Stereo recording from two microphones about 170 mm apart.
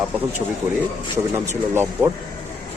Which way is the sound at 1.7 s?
15° right (ahead or behind).